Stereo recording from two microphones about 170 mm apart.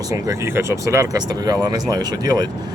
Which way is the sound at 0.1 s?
15° right (ahead or behind).